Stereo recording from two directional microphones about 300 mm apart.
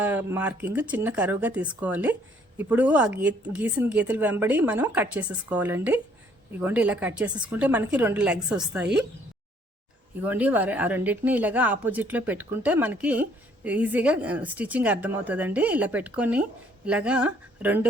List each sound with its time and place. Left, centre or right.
0.0 s a woman's voice: centre
10.2 s a woman's voice: centre